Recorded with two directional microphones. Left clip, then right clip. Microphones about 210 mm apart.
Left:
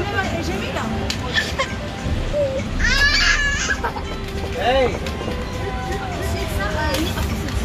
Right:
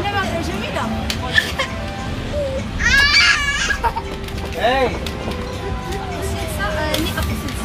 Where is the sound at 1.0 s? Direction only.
40° right (ahead or behind).